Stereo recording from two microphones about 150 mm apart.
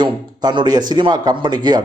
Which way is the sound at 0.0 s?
30° right (ahead or behind).